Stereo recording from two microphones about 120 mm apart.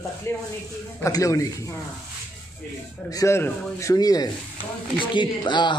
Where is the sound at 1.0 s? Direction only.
30° left (ahead or behind).